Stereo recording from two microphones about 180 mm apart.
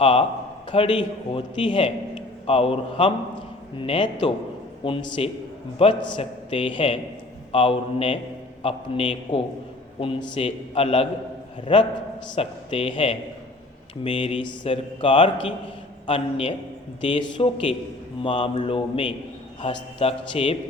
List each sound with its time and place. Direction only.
0.0 s a man's voice: 30° left (ahead or behind)